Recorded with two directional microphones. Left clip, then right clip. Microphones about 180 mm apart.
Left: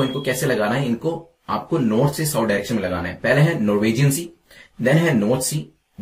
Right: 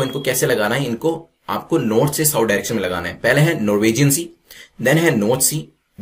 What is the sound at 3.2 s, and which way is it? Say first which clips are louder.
Speech: right 2 dB; 10° right (ahead or behind).